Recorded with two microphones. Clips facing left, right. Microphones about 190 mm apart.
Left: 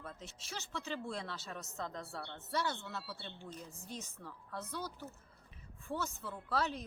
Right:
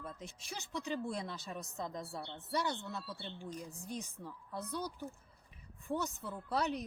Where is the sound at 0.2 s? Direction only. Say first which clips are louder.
Right 1 dB; 15° right (ahead or behind).